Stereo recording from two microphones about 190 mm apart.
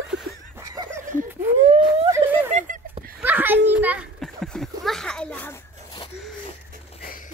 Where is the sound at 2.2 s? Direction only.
25° right (ahead or behind).